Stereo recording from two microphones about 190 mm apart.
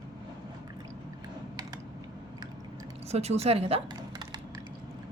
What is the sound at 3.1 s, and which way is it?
Speech, 35° right (ahead or behind).